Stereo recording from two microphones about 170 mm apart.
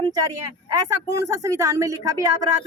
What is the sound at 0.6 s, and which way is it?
A woman's voice, 20° right (ahead or behind).